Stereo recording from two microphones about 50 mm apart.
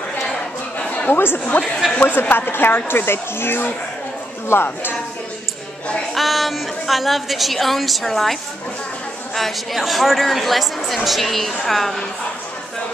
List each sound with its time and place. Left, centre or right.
0.7 s chatter: left
1.1 s speech: left
1.6 s a woman's voice: centre
2.0 s speech: left
6.1 s a woman's voice: centre